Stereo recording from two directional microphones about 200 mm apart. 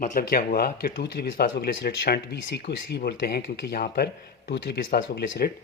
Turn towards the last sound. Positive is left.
turn(degrees=50)  # may be behind; listen again after turning